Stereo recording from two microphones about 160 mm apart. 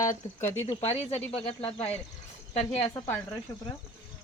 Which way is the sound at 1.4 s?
40° left (ahead or behind).